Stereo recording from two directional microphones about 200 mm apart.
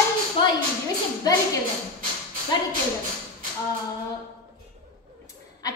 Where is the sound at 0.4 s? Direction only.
25° left (ahead or behind).